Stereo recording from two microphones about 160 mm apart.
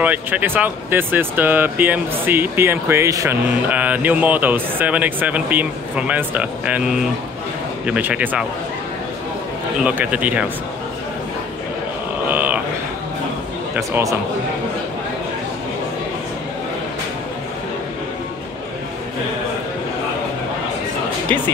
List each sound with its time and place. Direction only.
0.0 s speech: 10° right (ahead or behind)
9.8 s speech: 10° right (ahead or behind)
12.3 s a sound: 10° right (ahead or behind)
13.7 s speech: 20° right (ahead or behind)